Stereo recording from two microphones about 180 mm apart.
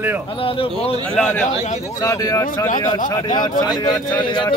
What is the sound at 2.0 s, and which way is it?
A man's voice, 20° left (ahead or behind).